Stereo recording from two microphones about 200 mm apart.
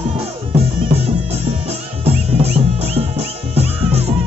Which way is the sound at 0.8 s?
30° right (ahead or behind).